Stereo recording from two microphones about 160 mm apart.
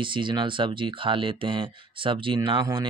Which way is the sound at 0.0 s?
30° right (ahead or behind).